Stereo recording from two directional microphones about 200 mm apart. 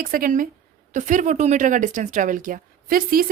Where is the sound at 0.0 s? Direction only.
45° right (ahead or behind).